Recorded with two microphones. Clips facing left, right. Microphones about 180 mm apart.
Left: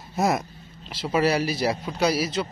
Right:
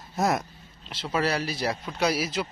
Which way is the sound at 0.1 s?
5° left (ahead or behind).